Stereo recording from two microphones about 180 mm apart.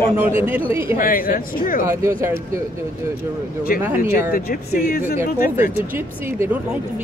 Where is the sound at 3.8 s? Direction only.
10° right (ahead or behind).